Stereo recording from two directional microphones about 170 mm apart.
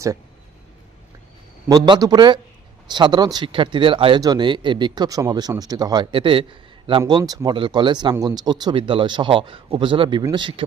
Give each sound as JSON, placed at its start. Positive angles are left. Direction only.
{"t": 1.6, "sound": "speech", "side_deg": -20}